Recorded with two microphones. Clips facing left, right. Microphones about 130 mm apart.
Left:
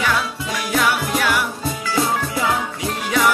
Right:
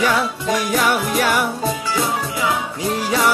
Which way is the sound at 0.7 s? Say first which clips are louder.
Left 2 dB; 45° right (ahead or behind).